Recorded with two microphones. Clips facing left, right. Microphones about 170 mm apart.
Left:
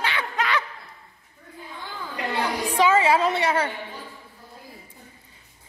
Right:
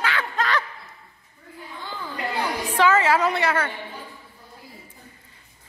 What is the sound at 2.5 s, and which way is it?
Music, 15° left (ahead or behind).